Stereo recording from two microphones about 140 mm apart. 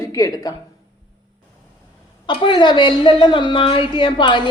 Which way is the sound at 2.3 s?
35° left (ahead or behind).